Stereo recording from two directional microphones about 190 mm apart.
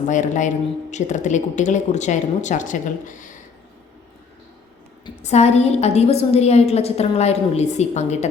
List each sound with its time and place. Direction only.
0.1 s speech: 40° left (ahead or behind)
5.2 s speech: 35° left (ahead or behind)